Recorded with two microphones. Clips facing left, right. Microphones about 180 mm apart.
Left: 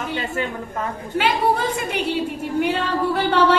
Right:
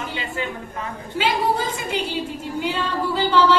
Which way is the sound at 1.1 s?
60° left (ahead or behind).